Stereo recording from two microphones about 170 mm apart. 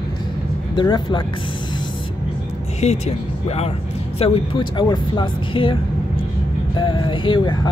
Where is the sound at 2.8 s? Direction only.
40° left (ahead or behind).